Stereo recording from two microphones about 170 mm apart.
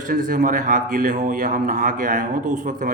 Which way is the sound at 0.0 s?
50° right (ahead or behind).